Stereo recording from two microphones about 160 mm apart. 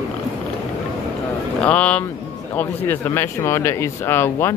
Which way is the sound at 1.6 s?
10° left (ahead or behind).